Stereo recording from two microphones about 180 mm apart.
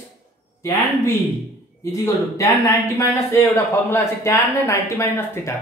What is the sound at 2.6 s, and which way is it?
Speech, 15° left (ahead or behind).